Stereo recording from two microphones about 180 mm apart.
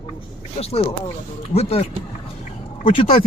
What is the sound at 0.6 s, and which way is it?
A man's voice, 35° left (ahead or behind).